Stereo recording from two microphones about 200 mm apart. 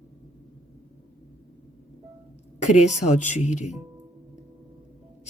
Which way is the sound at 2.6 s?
35° left (ahead or behind).